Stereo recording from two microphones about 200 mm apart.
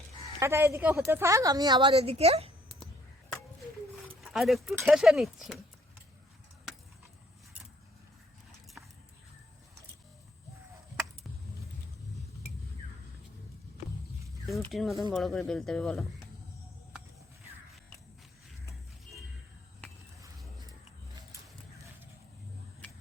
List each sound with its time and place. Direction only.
0.3 s speech: 10° right (ahead or behind); by 2.5 s 30° right (ahead or behind)
4.2 s speech: centre (ahead or behind)
14.4 s speech: centre (ahead or behind)